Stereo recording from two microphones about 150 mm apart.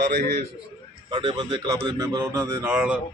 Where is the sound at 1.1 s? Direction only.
30° right (ahead or behind).